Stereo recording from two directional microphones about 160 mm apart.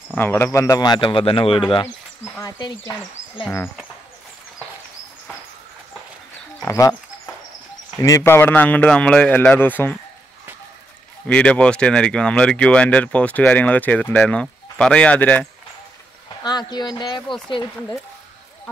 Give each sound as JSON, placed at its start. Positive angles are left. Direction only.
{"t": 0.1, "sound": "speech", "side_deg": 15}
{"t": 2.2, "sound": "speech", "side_deg": 15}
{"t": 6.6, "sound": "speech", "side_deg": 15}
{"t": 8.0, "sound": "speech", "side_deg": 15}
{"t": 11.2, "sound": "speech", "side_deg": 10}
{"t": 16.4, "sound": "speech", "side_deg": 25}